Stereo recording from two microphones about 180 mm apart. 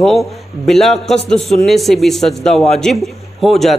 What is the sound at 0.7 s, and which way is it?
A man's voice, centre (ahead or behind).